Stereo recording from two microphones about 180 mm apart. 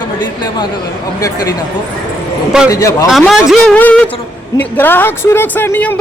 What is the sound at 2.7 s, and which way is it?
Speech, 20° left (ahead or behind).